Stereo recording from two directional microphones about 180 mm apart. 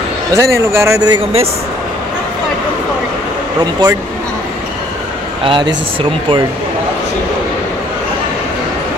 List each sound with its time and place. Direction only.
0.3 s speech: 15° right (ahead or behind)
3.8 s speech: 20° right (ahead or behind)
5.4 s speech: 30° right (ahead or behind)